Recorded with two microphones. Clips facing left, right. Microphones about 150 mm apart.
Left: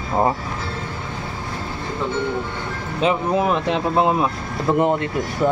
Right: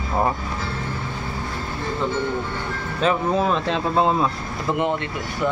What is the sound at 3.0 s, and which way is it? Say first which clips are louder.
Speech: left 1 dB; 15° left (ahead or behind).